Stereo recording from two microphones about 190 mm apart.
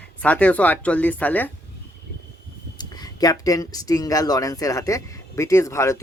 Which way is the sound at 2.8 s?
20° left (ahead or behind).